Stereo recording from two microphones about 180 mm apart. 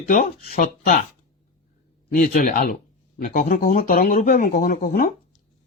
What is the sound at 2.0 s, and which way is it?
Speech, 50° left (ahead or behind).